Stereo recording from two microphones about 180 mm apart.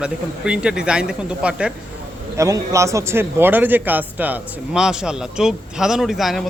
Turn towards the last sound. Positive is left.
turn(degrees=0)  # may be behind; listen again after turning